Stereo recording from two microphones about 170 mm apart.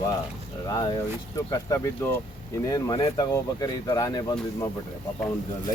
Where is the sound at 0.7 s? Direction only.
25° left (ahead or behind).